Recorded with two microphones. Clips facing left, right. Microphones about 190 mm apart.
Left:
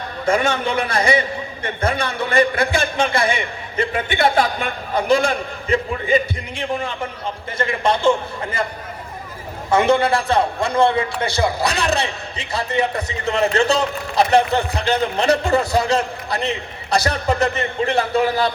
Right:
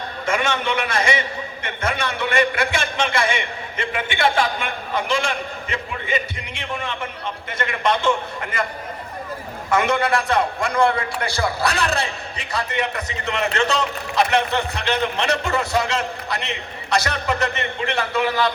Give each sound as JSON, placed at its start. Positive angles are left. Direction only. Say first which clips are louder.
{"t": 0.3, "sound": "a man's voice", "louder": "left 4 dB", "side_deg": 35}
{"t": 9.6, "sound": "a man's voice", "louder": "left 4 dB", "side_deg": 30}